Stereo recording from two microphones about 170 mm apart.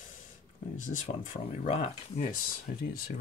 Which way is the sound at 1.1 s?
50° left (ahead or behind).